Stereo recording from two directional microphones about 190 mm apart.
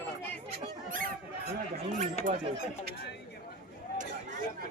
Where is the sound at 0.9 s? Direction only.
45° right (ahead or behind).